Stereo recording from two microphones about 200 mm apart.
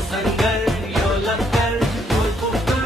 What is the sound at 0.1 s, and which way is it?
Music, centre (ahead or behind).